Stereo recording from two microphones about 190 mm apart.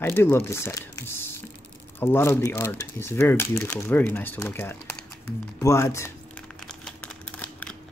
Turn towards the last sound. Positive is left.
turn(degrees=10)  # may be behind; listen again after turning